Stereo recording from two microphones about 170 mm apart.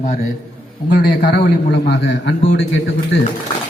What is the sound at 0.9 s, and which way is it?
A man's voice, 70° left (ahead or behind).